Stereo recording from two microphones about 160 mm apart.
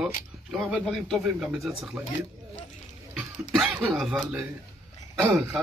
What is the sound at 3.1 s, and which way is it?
Speech, 5° right (ahead or behind).